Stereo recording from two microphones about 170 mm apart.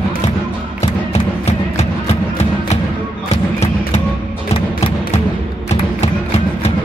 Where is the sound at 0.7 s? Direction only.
40° left (ahead or behind).